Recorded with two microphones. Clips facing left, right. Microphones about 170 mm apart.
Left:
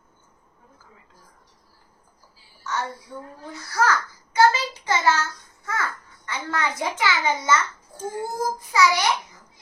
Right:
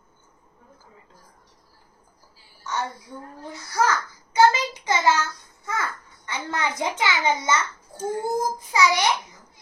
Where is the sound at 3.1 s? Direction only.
15° right (ahead or behind).